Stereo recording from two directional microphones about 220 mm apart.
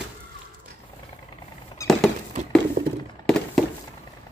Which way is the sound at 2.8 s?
45° right (ahead or behind).